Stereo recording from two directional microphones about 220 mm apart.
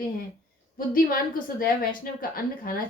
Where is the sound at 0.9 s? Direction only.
40° left (ahead or behind).